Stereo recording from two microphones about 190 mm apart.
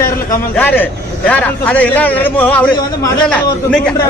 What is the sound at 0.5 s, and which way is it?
A man's voice, 10° left (ahead or behind).